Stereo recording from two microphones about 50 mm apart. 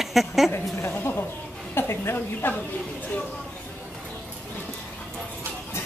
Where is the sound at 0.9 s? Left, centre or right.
Left.